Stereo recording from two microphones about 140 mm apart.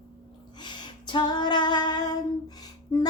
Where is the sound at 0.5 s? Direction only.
30° left (ahead or behind).